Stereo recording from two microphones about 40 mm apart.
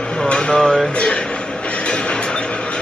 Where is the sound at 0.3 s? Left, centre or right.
Left.